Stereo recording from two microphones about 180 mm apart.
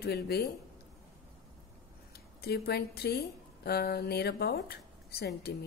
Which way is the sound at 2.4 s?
60° left (ahead or behind).